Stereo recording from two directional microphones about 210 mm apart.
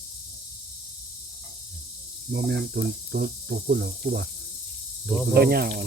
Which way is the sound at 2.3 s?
55° right (ahead or behind).